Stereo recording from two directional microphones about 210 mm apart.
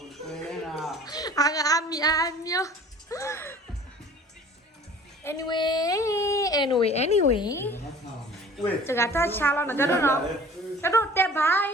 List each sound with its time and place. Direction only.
0.3 s a sound: centre (ahead or behind)
1.0 s child singing: 15° left (ahead or behind)
5.2 s a woman's voice: 15° left (ahead or behind); by 7.4 s 30° left (ahead or behind)
7.4 s a woman's voice: 10° left (ahead or behind)
8.9 s a woman's voice: 10° left (ahead or behind)